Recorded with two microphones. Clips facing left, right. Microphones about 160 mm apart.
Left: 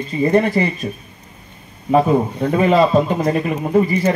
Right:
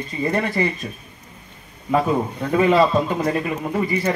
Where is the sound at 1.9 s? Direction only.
30° left (ahead or behind).